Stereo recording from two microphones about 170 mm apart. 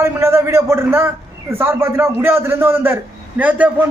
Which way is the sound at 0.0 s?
15° right (ahead or behind).